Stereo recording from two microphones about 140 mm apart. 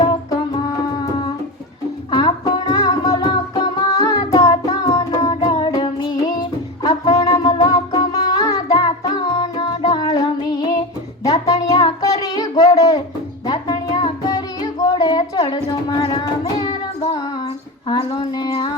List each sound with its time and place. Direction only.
0.0 s music: 25° left (ahead or behind)
2.0 s music: 30° left (ahead or behind)
12.0 s a sound: 25° left (ahead or behind)
13.5 s music: 30° left (ahead or behind)
16.6 s child singing: 30° left (ahead or behind)
17.8 s a sound: 30° left (ahead or behind)